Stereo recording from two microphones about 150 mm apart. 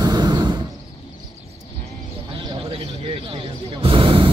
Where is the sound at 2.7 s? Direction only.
40° right (ahead or behind).